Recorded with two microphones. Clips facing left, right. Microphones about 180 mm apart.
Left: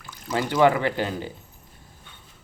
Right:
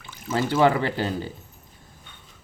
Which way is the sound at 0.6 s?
35° right (ahead or behind).